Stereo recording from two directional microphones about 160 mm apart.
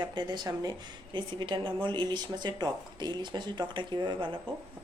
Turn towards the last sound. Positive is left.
turn(degrees=-30)  # may be behind; listen again after turning